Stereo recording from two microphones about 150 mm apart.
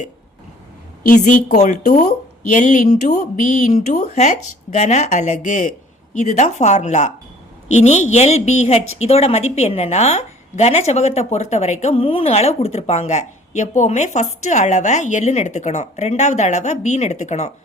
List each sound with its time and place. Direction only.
1.0 s a woman's voice: 60° left (ahead or behind)